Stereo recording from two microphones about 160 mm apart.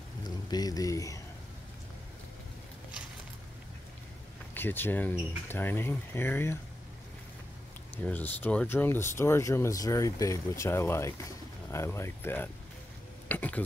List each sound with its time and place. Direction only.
0.5 s speech: 25° left (ahead or behind)
4.6 s speech: 15° left (ahead or behind)
8.0 s speech: 10° left (ahead or behind)